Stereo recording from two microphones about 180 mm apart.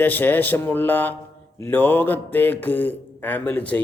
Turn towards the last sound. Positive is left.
turn(degrees=10)  # may be behind; listen again after turning